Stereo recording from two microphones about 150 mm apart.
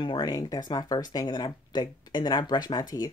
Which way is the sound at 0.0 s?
30° left (ahead or behind).